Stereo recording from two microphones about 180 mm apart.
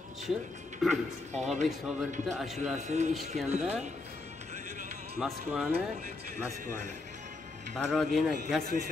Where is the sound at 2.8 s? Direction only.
40° right (ahead or behind).